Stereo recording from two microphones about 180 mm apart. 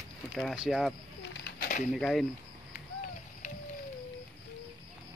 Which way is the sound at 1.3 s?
55° left (ahead or behind).